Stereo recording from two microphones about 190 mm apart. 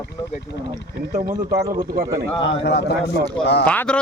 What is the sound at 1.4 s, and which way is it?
Speech, 20° right (ahead or behind).